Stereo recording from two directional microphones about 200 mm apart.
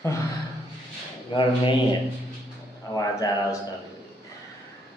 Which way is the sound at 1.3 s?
25° left (ahead or behind).